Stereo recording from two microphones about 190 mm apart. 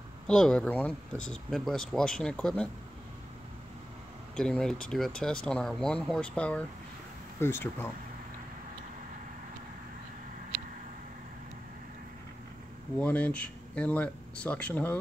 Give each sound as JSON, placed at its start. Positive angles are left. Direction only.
{"t": 0.3, "sound": "speech", "side_deg": 5}
{"t": 4.4, "sound": "speech", "side_deg": 5}
{"t": 13.0, "sound": "speech", "side_deg": 5}